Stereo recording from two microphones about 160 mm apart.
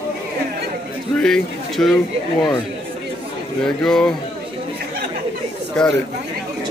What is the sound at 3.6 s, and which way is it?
Speech, 5° left (ahead or behind).